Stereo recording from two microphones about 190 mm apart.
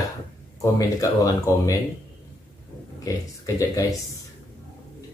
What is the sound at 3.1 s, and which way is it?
Speech, 15° left (ahead or behind).